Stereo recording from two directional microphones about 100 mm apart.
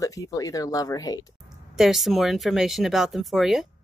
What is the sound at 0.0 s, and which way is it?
Speech, 35° left (ahead or behind).